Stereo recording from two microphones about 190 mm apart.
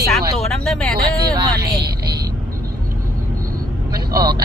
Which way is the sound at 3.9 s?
20° right (ahead or behind).